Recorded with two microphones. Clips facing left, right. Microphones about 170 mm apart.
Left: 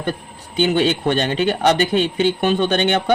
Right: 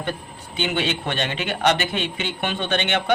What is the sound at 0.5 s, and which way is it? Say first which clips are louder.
Speech: left 8 dB; 40° left (ahead or behind).